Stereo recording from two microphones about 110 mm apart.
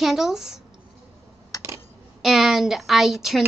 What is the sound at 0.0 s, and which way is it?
Speech, 5° right (ahead or behind).